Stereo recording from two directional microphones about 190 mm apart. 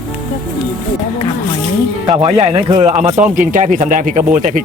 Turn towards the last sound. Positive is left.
turn(degrees=-45)  # may be behind; listen again after turning